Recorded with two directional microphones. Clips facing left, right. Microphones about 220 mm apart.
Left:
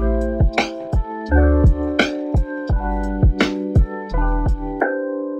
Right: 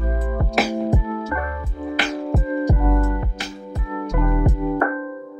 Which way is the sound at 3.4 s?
75° left (ahead or behind).